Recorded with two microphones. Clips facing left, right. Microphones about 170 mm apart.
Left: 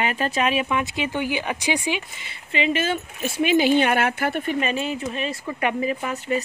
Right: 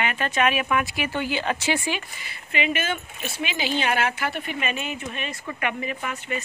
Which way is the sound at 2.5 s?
30° left (ahead or behind).